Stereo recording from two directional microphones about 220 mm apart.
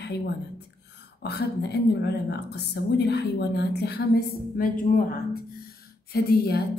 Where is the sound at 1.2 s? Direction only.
50° left (ahead or behind).